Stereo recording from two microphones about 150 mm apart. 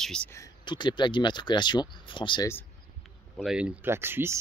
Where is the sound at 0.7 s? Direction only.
30° left (ahead or behind).